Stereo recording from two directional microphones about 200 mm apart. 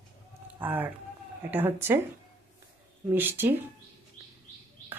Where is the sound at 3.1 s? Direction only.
10° right (ahead or behind).